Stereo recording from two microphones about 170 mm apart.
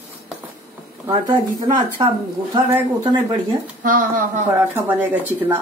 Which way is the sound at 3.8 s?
50° right (ahead or behind).